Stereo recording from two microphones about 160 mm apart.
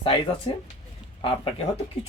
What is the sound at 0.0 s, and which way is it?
Speech, 30° left (ahead or behind).